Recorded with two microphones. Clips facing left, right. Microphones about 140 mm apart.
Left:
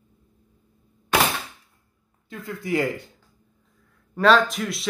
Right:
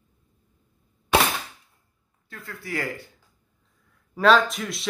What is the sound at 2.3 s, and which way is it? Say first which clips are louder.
Speech: left 7 dB; 20° left (ahead or behind).